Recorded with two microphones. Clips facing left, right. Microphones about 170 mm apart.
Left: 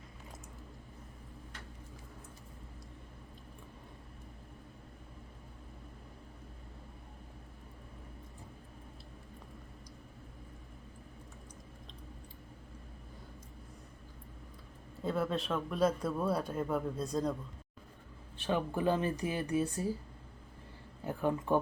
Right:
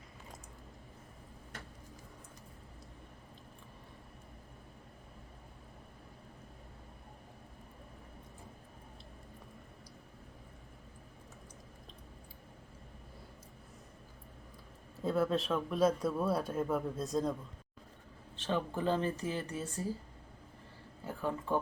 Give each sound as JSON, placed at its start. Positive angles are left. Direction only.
{"t": 15.0, "sound": "speech", "side_deg": 0}
{"t": 18.3, "sound": "speech", "side_deg": 15}
{"t": 21.0, "sound": "a sound", "side_deg": 20}